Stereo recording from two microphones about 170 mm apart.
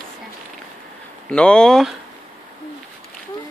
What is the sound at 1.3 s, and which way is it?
Speech, 5° left (ahead or behind).